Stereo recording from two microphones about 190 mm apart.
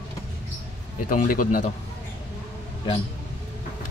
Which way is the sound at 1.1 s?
45° left (ahead or behind).